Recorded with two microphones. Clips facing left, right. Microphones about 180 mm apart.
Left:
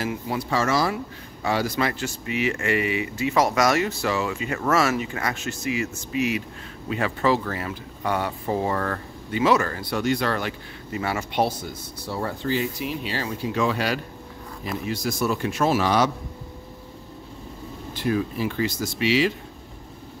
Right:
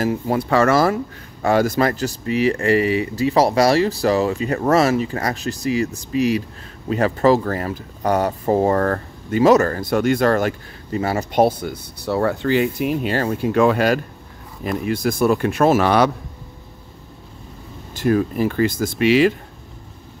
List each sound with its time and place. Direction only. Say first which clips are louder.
0.0 s speech: right 7 dB; 45° right (ahead or behind)
17.9 s speech: right 6 dB; 50° right (ahead or behind)